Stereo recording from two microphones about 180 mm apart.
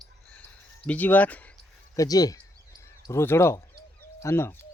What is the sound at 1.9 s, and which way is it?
Speech, 20° left (ahead or behind).